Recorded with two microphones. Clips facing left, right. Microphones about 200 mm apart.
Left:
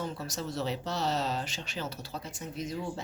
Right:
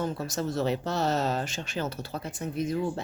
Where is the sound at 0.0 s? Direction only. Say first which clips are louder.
Right 6 dB; 50° right (ahead or behind).